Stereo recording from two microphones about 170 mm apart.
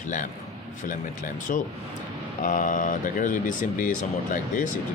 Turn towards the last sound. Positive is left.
turn(degrees=50)  # may be behind; listen again after turning